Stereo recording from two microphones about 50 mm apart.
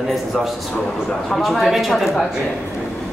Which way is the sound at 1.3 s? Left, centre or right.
Centre.